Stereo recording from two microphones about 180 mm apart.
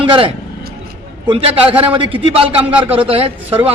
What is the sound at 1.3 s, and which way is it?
A man's voice, 30° right (ahead or behind).